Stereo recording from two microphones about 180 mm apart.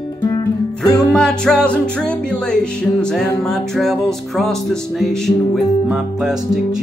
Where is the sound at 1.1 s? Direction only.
5° left (ahead or behind).